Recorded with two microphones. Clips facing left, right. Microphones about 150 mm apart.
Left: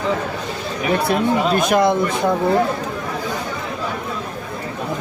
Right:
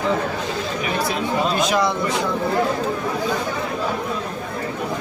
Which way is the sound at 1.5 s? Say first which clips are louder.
Left 5 dB; 55° left (ahead or behind).